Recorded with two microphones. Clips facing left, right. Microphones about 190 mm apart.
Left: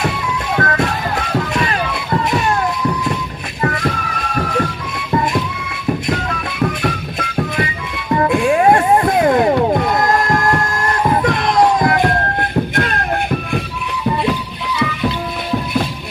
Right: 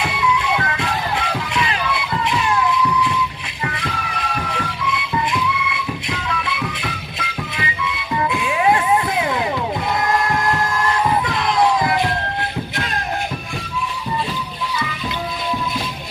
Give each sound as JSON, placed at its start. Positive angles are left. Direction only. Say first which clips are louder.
{"t": 0.0, "sound": "music", "louder": "even", "side_deg": 45}
{"t": 1.5, "sound": "run", "louder": "left 3 dB", "side_deg": 45}
{"t": 3.6, "sound": "music", "louder": "left 7 dB", "side_deg": 45}
{"t": 14.0, "sound": "music", "louder": "left 10 dB", "side_deg": 65}